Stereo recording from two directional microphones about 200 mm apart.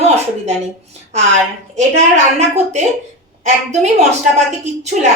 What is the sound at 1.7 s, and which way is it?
A woman's voice, 35° right (ahead or behind).